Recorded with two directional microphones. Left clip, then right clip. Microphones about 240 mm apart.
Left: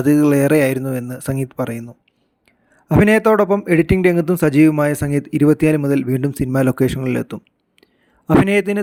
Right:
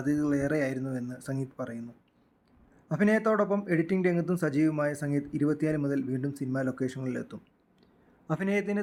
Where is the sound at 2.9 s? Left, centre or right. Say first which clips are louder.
Left 13 dB; left.